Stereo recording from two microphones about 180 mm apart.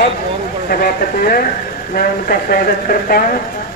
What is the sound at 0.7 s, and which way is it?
Speech, 50° left (ahead or behind).